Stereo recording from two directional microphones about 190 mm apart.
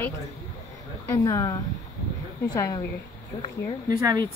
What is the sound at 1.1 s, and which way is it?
A woman's voice, 15° left (ahead or behind).